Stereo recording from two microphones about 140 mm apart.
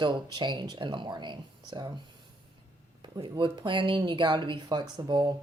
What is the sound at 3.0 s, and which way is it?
Speech, 35° right (ahead or behind).